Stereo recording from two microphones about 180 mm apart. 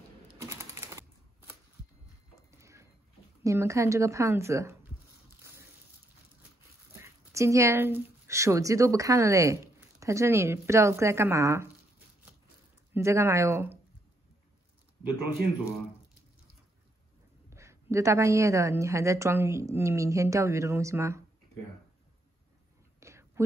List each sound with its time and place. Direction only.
0.4 s typewriter: 15° right (ahead or behind)
2.5 s a sound: 15° right (ahead or behind)
3.4 s a woman's voice: 15° right (ahead or behind)
7.0 s speech: 15° right (ahead or behind)
12.9 s a woman's voice: 15° right (ahead or behind)
17.5 s a woman's voice: 15° right (ahead or behind)
22.9 s whispering: 15° right (ahead or behind)